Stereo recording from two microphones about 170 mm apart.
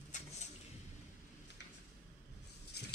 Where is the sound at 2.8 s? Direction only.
75° left (ahead or behind).